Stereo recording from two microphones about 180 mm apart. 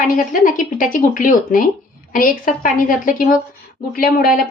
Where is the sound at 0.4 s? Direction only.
50° left (ahead or behind).